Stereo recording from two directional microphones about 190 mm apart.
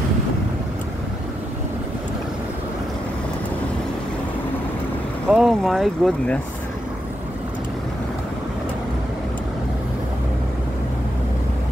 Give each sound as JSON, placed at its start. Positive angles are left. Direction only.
{"t": 5.3, "sound": "speech", "side_deg": 0}